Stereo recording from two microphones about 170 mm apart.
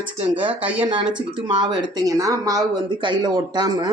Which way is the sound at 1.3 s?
25° right (ahead or behind).